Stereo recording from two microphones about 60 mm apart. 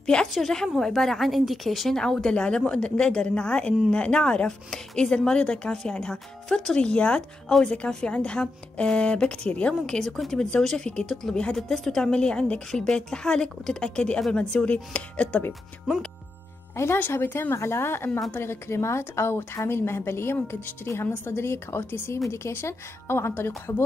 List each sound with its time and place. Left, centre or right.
0.0 s a sound: centre
0.3 s speech: centre
2.0 s a woman's voice: centre
9.9 s a woman's voice: centre
11.5 s a woman's voice: centre; by 15.4 s left
16.7 s a woman's voice: left